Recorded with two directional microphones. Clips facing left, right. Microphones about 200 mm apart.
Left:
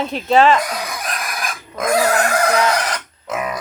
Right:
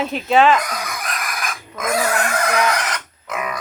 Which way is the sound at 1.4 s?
35° left (ahead or behind).